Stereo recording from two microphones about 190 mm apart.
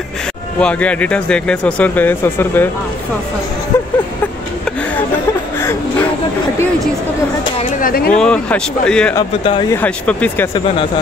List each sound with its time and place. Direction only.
0.6 s speech: 5° left (ahead or behind)
3.7 s a sound: 15° left (ahead or behind)
5.6 s whimper: 15° left (ahead or behind)
7.8 s a sound: 50° left (ahead or behind)
8.1 s speech: 5° left (ahead or behind)
9.4 s speech: 25° left (ahead or behind)
9.7 s speech: 10° left (ahead or behind)